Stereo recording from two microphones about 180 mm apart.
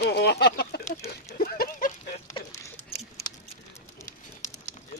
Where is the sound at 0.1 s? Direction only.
65° left (ahead or behind).